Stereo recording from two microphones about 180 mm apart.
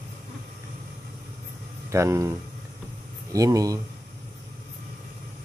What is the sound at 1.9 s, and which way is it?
Speech, 15° right (ahead or behind).